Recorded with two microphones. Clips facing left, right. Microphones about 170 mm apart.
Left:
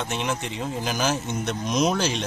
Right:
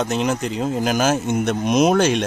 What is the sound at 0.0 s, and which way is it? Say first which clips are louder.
Speech: right 7 dB; 40° right (ahead or behind).